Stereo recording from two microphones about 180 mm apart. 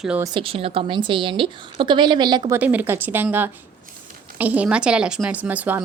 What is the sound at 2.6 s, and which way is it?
Speech, 10° right (ahead or behind).